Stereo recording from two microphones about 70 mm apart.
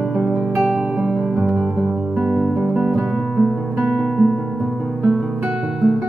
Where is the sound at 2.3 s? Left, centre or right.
Centre.